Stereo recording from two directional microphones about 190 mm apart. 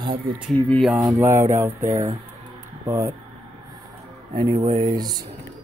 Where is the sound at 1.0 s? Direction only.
15° right (ahead or behind).